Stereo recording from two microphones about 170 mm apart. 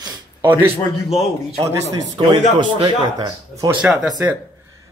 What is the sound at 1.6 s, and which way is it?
A man's voice, 20° right (ahead or behind).